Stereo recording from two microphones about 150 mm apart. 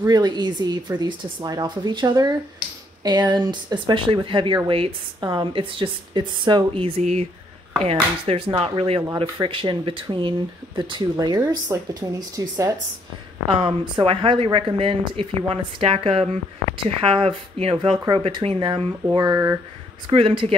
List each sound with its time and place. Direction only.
0.0 s speech: 30° right (ahead or behind)
9.0 s speech: 20° right (ahead or behind)
9.4 s speech: 35° right (ahead or behind)
13.6 s speech: 35° right (ahead or behind)
19.0 s speech: 25° right (ahead or behind)
20.1 s speech: 35° right (ahead or behind)